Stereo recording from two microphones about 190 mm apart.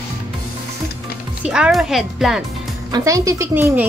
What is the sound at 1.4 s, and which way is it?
Speech, 5° right (ahead or behind).